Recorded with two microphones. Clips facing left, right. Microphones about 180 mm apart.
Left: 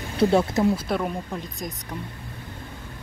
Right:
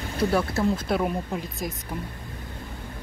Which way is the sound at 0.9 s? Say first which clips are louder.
Right 1 dB; 5° right (ahead or behind).